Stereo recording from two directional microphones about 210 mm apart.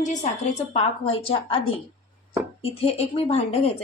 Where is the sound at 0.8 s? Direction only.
25° left (ahead or behind).